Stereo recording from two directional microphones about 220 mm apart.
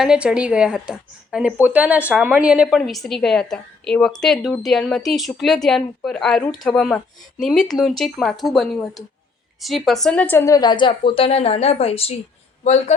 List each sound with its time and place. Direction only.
0.0 s speech: 5° right (ahead or behind); by 12.1 s 25° left (ahead or behind)